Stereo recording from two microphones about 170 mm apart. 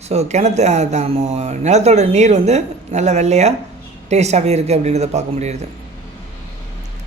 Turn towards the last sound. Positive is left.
turn(degrees=-40)  # may be behind; listen again after turning